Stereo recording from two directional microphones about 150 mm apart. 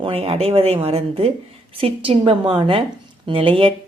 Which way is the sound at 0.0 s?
40° right (ahead or behind).